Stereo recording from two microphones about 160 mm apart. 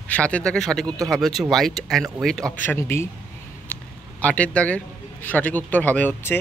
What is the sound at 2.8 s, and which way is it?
A man's voice, 15° left (ahead or behind).